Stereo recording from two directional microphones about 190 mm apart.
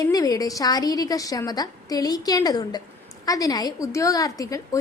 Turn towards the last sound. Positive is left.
turn(degrees=20)  # may be behind; listen again after turning